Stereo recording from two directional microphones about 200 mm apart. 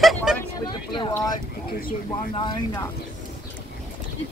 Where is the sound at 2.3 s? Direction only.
20° left (ahead or behind).